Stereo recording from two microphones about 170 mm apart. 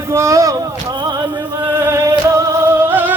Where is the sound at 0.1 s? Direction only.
15° right (ahead or behind).